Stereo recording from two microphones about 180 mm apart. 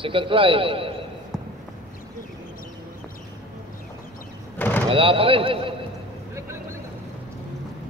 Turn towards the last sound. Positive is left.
turn(degrees=-15)  # may be behind; listen again after turning